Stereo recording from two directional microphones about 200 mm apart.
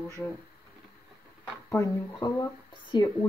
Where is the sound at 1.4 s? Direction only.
15° left (ahead or behind).